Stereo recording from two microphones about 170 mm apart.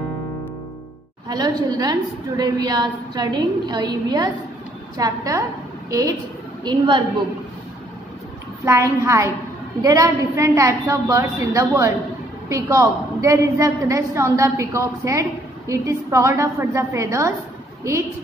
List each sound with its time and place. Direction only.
1.3 s a woman's voice: 20° right (ahead or behind)
8.6 s a woman's voice: 15° right (ahead or behind)